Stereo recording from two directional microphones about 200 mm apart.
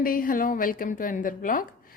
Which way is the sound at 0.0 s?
45° left (ahead or behind).